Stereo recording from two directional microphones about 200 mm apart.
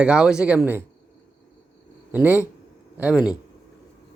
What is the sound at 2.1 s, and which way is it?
Speech, 10° right (ahead or behind).